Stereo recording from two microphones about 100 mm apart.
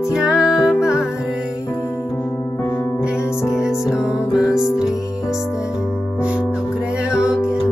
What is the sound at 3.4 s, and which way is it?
Music, 5° right (ahead or behind).